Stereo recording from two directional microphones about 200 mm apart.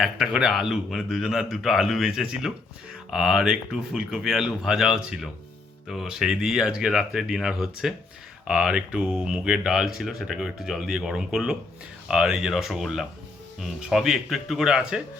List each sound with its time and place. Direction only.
0.0 s speech: centre (ahead or behind)